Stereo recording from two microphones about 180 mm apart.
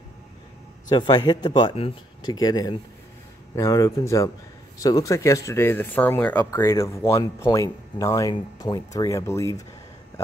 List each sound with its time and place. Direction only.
0.8 s a man's voice: 25° left (ahead or behind)